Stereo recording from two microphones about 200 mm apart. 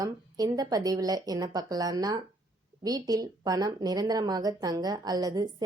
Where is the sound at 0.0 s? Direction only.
15° right (ahead or behind).